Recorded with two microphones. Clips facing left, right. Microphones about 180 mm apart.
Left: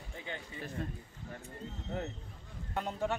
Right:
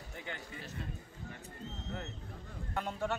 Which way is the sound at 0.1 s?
20° left (ahead or behind).